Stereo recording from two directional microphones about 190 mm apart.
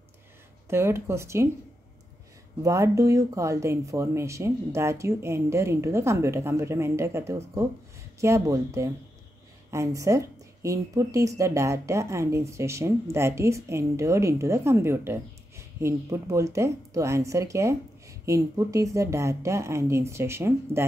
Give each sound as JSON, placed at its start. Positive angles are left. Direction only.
{"t": 0.7, "sound": "speech", "side_deg": -15}
{"t": 2.6, "sound": "speech", "side_deg": -15}